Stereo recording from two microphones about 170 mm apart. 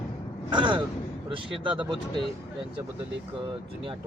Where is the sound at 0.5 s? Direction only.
25° right (ahead or behind).